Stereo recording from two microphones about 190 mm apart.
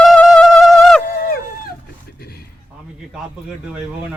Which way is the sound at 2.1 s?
55° left (ahead or behind).